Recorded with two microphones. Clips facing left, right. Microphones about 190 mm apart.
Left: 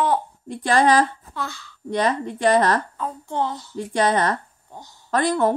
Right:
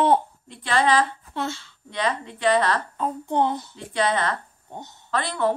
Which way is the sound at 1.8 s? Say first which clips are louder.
Left 5 dB; 45° left (ahead or behind).